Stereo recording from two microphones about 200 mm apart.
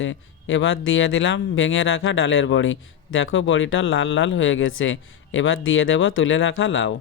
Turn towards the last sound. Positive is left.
turn(degrees=65)  # may be behind; listen again after turning